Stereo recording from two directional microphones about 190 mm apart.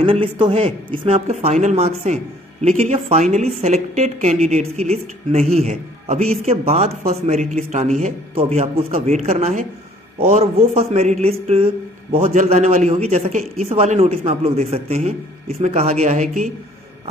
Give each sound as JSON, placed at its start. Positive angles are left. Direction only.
{"t": 0.0, "sound": "speech", "side_deg": -30}